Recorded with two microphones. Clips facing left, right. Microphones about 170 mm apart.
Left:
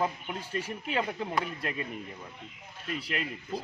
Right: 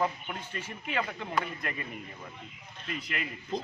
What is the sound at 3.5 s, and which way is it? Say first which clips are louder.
Speech: right 2 dB; 10° left (ahead or behind).